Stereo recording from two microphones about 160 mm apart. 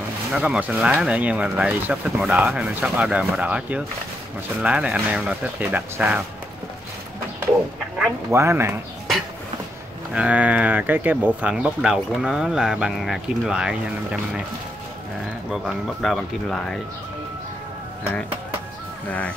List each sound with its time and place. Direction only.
0.3 s speech: 5° right (ahead or behind)
8.3 s speech: 15° right (ahead or behind)
10.1 s speech: 10° right (ahead or behind)
15.5 s speech: centre (ahead or behind)
19.0 s speech: 10° left (ahead or behind)